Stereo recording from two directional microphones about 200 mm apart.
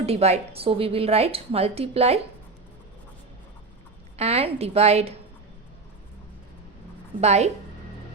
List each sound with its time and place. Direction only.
0.0 s a woman's voice: 30° right (ahead or behind)
4.2 s a woman's voice: 30° right (ahead or behind)
7.2 s a woman's voice: 35° right (ahead or behind)